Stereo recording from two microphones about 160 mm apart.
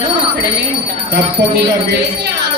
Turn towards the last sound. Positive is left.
turn(degrees=-90)